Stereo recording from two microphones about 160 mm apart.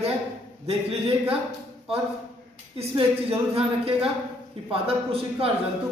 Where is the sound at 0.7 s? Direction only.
40° right (ahead or behind).